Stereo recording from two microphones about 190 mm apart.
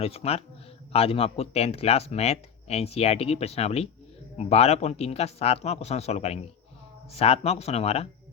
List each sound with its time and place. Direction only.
0.0 s speech: 30° left (ahead or behind)